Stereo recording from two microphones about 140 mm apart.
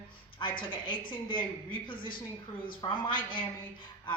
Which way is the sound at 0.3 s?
35° left (ahead or behind).